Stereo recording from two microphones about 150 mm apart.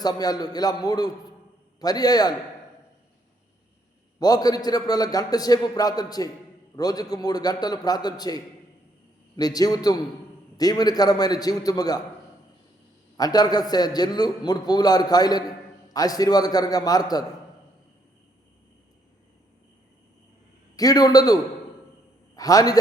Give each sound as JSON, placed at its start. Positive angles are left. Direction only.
{"t": 0.0, "sound": "a man's voice", "side_deg": 25}
{"t": 4.2, "sound": "a man's voice", "side_deg": 25}
{"t": 13.1, "sound": "a man's voice", "side_deg": 25}
{"t": 20.7, "sound": "a man's voice", "side_deg": 25}
{"t": 22.4, "sound": "a man's voice", "side_deg": 25}